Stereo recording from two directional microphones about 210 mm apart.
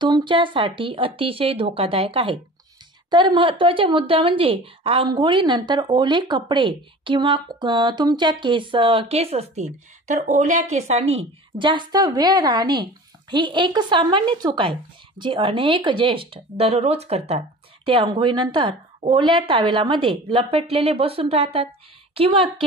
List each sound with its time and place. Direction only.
0.0 s a woman's voice: 20° right (ahead or behind)